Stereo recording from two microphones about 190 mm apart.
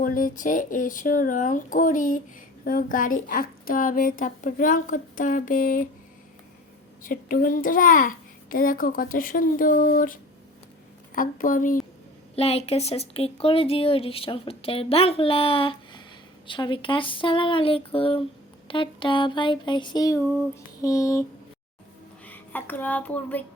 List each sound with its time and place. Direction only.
0.0 s a child's voice: 45° left (ahead or behind)
7.0 s a child's voice: 45° left (ahead or behind)
12.4 s speech: 35° left (ahead or behind); by 21.2 s 15° left (ahead or behind)
22.3 s speech: 10° left (ahead or behind)